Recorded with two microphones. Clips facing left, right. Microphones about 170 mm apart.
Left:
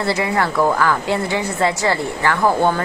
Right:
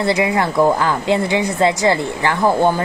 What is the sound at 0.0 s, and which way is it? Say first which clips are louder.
A woman's voice: right 2 dB; 20° right (ahead or behind).